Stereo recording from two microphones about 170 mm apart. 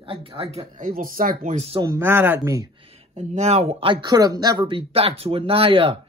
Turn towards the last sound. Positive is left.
turn(degrees=-35)  # may be behind; listen again after turning